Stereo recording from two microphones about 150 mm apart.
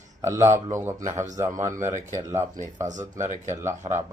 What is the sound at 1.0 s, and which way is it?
Speech, 50° right (ahead or behind).